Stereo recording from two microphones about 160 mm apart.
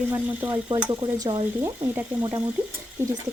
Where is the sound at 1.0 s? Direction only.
30° right (ahead or behind).